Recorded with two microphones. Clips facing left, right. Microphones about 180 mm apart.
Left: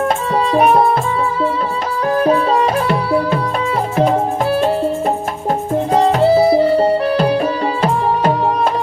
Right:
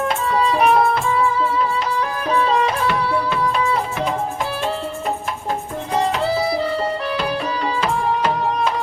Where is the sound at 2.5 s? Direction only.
40° left (ahead or behind).